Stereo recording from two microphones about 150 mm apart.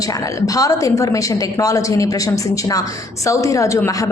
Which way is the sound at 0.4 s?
25° left (ahead or behind).